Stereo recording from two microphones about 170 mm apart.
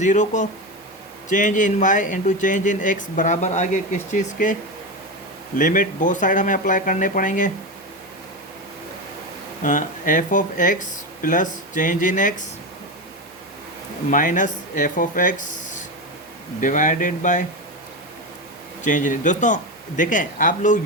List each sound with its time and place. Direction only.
0.0 s speech: 45° left (ahead or behind)
5.5 s speech: 50° left (ahead or behind)
9.6 s speech: 50° left (ahead or behind)
14.1 s speech: 50° left (ahead or behind)
16.6 s speech: 50° left (ahead or behind)
18.8 s speech: 50° left (ahead or behind)